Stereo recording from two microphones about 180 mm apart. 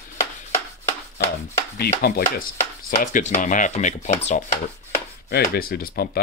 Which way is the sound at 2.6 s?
45° left (ahead or behind).